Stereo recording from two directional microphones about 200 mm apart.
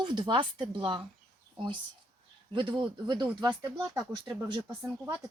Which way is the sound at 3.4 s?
20° right (ahead or behind).